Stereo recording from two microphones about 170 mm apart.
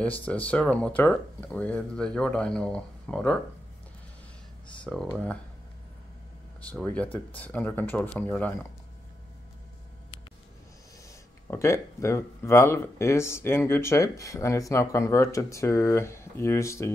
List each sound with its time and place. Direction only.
0.2 s speech: 10° left (ahead or behind)
4.9 s speech: 5° left (ahead or behind)
6.7 s speech: 10° left (ahead or behind)
11.4 s speech: 15° left (ahead or behind)